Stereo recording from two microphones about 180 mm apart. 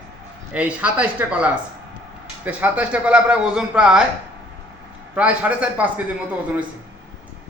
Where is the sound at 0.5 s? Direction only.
5° right (ahead or behind).